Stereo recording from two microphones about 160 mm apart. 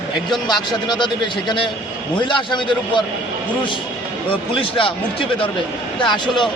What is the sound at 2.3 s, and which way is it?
Speech, 30° left (ahead or behind).